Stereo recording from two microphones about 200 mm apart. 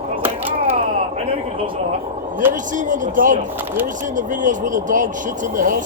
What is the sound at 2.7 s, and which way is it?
Speech, 40° right (ahead or behind).